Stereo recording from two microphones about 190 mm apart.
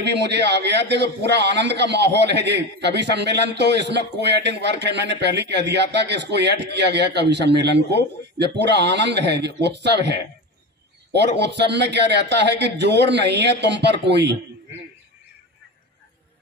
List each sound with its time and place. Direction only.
0.0 s a man's voice: 65° right (ahead or behind)